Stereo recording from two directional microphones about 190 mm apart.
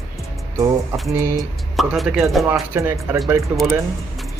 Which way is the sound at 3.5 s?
Centre (ahead or behind).